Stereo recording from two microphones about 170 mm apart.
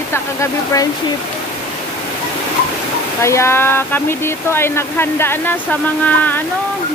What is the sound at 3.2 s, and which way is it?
Speech, 15° left (ahead or behind).